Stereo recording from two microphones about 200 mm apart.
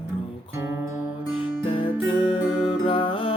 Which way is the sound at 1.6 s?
25° left (ahead or behind).